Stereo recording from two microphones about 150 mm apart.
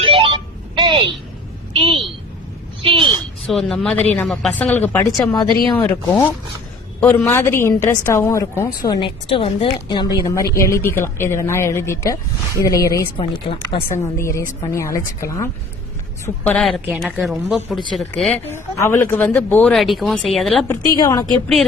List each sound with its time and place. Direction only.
0.0 s telephone: 35° right (ahead or behind)
1.7 s a sound: 35° right (ahead or behind)
3.4 s a woman's voice: 5° left (ahead or behind)
5.3 s a woman's voice: 30° left (ahead or behind)
5.8 s a woman's voice: 15° left (ahead or behind)
13.1 s speech: 35° left (ahead or behind)
13.9 s a woman's voice: 20° left (ahead or behind)
16.2 s a woman's voice: 10° left (ahead or behind)
16.8 s a woman's voice: 10° right (ahead or behind)
18.4 s a woman's voice: 15° left (ahead or behind)
20.9 s a woman's voice: 25° left (ahead or behind)